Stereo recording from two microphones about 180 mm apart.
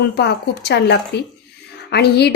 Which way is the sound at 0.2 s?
65° left (ahead or behind).